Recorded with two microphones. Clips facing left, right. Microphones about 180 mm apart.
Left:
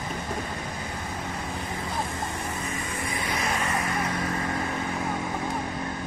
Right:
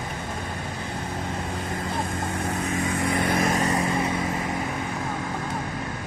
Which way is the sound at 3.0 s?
60° right (ahead or behind).